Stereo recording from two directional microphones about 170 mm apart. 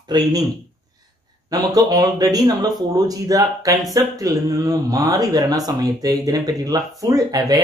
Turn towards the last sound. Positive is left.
turn(degrees=-20)  # may be behind; listen again after turning